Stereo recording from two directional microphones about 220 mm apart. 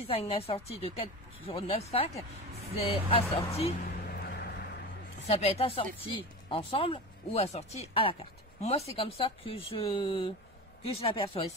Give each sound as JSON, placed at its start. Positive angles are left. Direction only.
{"t": 0.1, "sound": "speech", "side_deg": 25}
{"t": 4.0, "sound": "music", "side_deg": 45}
{"t": 5.3, "sound": "speech", "side_deg": 25}